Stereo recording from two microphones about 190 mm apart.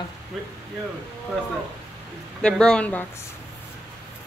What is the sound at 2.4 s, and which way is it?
Speech, 5° left (ahead or behind).